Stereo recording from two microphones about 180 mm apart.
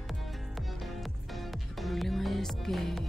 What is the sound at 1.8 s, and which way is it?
Music, centre (ahead or behind).